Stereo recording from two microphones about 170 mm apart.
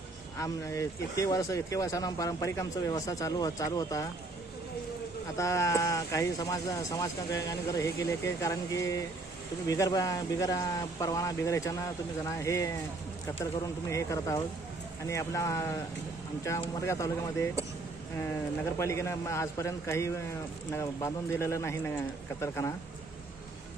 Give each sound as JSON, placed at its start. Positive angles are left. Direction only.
{"t": 0.3, "sound": "speech", "side_deg": 15}
{"t": 5.4, "sound": "speech", "side_deg": 15}
{"t": 13.9, "sound": "speech", "side_deg": 20}
{"t": 16.8, "sound": "speech", "side_deg": 15}
{"t": 18.8, "sound": "speech", "side_deg": 15}